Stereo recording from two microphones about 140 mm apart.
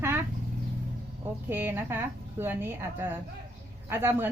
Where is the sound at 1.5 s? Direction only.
15° right (ahead or behind).